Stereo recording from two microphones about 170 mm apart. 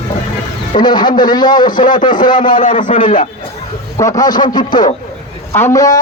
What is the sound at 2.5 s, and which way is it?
Speech, 50° left (ahead or behind).